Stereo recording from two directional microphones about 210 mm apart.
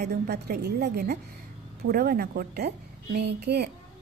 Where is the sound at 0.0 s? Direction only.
50° right (ahead or behind).